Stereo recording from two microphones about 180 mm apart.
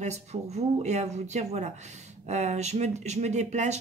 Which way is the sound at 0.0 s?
40° right (ahead or behind).